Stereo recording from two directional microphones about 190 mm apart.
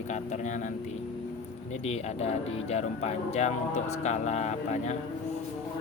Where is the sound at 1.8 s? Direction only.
35° left (ahead or behind).